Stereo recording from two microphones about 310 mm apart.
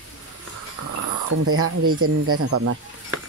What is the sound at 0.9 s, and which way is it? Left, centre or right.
Speech, right.